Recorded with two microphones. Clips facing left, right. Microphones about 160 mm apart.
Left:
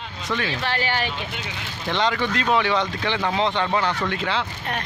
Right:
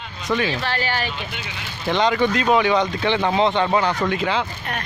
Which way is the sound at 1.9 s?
15° right (ahead or behind).